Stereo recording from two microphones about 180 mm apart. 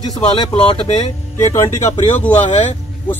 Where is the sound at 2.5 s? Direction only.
35° left (ahead or behind).